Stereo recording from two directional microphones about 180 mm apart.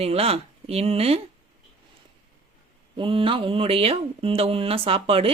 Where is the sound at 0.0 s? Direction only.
35° right (ahead or behind).